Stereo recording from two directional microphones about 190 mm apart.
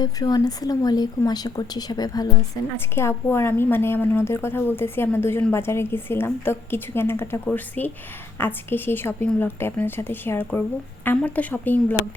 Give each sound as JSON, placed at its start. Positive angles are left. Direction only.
{"t": 0.0, "sound": "a woman's voice", "side_deg": 20}